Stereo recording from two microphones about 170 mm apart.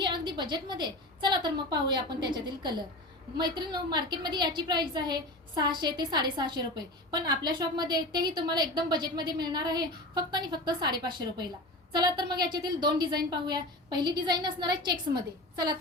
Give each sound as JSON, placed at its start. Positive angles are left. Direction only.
{"t": 0.0, "sound": "a woman's voice", "side_deg": -25}